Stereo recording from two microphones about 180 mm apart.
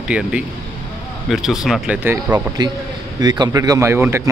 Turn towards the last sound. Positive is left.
turn(degrees=-15)  # may be behind; listen again after turning